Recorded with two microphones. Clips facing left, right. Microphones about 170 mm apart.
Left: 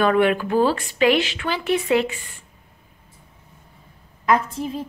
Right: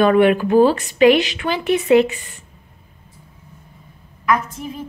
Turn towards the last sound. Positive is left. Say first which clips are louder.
# left 2 dB
turn(degrees=30)  # may be behind; listen again after turning